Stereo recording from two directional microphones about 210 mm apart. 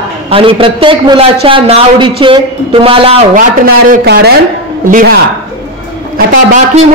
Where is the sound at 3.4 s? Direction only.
40° right (ahead or behind).